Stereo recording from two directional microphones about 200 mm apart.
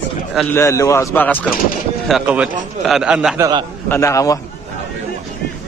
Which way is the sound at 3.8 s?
15° left (ahead or behind).